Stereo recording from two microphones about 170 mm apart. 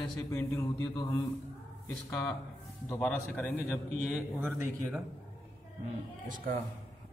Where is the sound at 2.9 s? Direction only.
10° left (ahead or behind).